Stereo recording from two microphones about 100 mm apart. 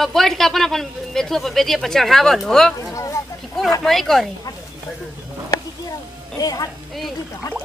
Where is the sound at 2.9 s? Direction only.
30° left (ahead or behind).